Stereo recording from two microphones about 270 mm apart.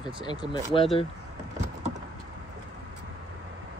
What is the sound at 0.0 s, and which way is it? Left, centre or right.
Speech, centre.